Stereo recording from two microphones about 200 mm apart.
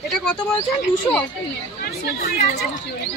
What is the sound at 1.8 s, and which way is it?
Speech, 50° left (ahead or behind).